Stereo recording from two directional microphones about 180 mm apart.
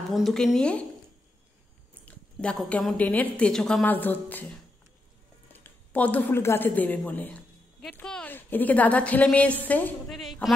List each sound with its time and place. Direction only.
0.1 s a woman's voice: centre (ahead or behind)
2.0 s a woman's voice: 5° left (ahead or behind)
5.5 s a woman's voice: 10° left (ahead or behind)